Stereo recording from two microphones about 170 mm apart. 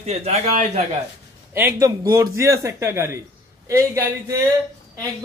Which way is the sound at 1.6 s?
15° right (ahead or behind).